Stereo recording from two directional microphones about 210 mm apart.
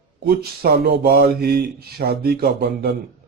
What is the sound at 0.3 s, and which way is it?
Speech, 45° right (ahead or behind).